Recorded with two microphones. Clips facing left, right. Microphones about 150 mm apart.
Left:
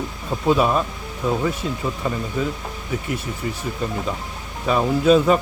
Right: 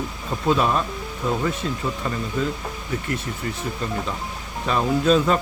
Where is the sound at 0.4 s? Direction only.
5° left (ahead or behind).